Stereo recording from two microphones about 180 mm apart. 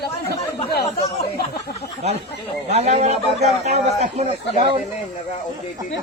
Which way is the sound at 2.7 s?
35° right (ahead or behind).